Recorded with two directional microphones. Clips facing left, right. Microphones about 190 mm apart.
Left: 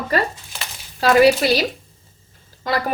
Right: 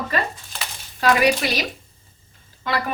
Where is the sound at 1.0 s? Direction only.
35° left (ahead or behind).